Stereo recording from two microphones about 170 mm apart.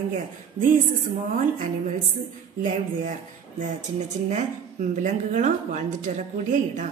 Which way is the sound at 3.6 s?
45° right (ahead or behind).